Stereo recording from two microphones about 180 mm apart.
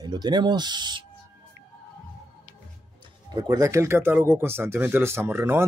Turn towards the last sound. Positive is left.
turn(degrees=-15)  # may be behind; listen again after turning